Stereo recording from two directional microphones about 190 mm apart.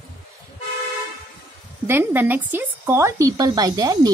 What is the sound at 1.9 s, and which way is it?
A woman's voice, 10° right (ahead or behind).